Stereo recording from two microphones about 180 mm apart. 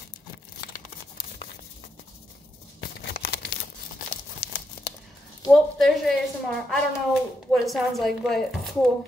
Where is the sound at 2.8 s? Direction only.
70° left (ahead or behind).